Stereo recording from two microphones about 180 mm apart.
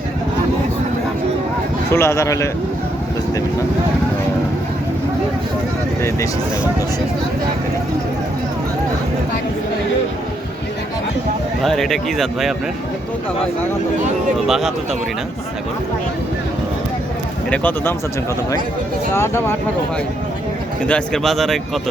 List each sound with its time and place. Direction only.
1.9 s a man's voice: 15° left (ahead or behind)
11.6 s speech: centre (ahead or behind)
14.4 s speech: centre (ahead or behind)
17.5 s a man's voice: 10° left (ahead or behind)
19.1 s a man's voice: 15° left (ahead or behind)
20.8 s speech: 5° left (ahead or behind)